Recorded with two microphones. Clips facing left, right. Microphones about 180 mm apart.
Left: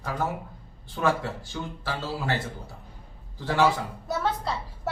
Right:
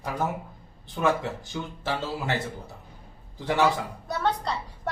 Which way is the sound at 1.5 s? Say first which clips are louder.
Right 2 dB; 20° right (ahead or behind).